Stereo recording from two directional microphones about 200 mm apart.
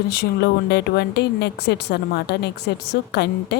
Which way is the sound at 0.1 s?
55° left (ahead or behind).